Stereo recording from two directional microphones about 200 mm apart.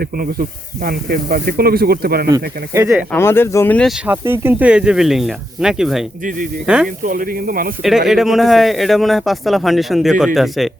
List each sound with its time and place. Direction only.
0.9 s speech: 50° right (ahead or behind)
2.3 s speech: 15° right (ahead or behind)
3.2 s speech: 10° left (ahead or behind)
4.0 s a man's voice: 10° right (ahead or behind)
7.0 s speech: 45° right (ahead or behind)
7.9 s a man's voice: centre (ahead or behind)